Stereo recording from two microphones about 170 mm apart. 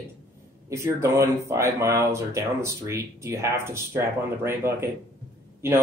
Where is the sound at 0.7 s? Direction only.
15° right (ahead or behind).